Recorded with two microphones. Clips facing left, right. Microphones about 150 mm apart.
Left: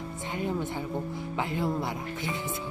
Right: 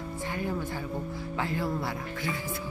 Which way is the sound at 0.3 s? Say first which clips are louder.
Left 2 dB; 20° left (ahead or behind).